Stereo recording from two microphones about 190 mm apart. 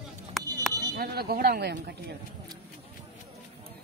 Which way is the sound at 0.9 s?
55° right (ahead or behind).